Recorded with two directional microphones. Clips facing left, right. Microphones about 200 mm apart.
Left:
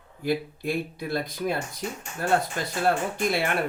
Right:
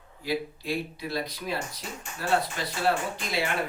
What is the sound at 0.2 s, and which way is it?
Speech, 50° left (ahead or behind).